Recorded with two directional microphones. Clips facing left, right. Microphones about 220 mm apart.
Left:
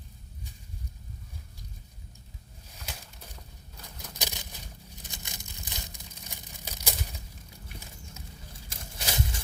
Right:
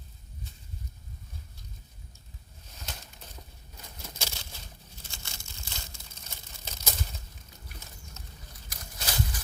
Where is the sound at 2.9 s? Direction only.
10° left (ahead or behind).